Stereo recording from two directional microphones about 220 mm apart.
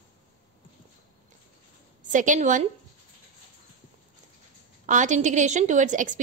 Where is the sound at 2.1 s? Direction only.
35° right (ahead or behind).